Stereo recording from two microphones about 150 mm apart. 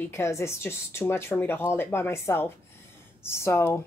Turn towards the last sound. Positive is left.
turn(degrees=15)  # may be behind; listen again after turning